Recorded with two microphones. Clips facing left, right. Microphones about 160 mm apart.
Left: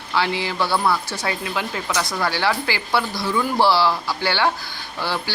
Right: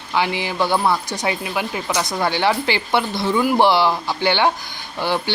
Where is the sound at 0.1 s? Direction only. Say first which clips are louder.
Right 1 dB; 15° right (ahead or behind).